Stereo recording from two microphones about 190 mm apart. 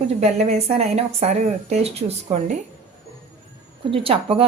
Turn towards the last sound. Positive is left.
turn(degrees=-30)  # may be behind; listen again after turning